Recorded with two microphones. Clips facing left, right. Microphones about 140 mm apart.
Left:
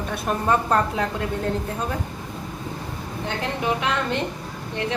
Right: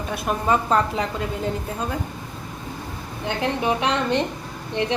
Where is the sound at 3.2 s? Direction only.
20° right (ahead or behind).